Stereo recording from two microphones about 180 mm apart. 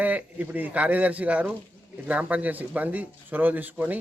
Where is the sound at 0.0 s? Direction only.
10° right (ahead or behind).